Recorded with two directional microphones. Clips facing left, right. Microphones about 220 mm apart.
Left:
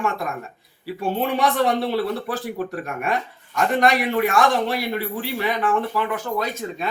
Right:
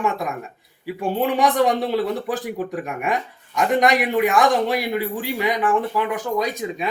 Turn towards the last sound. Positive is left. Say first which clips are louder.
# right 2 dB
turn(degrees=-15)  # may be behind; listen again after turning